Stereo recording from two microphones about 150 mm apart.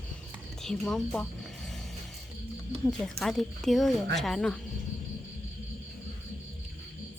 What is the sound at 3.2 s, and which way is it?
Speech, centre (ahead or behind).